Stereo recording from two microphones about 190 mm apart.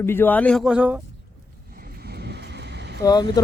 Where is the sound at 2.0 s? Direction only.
60° right (ahead or behind).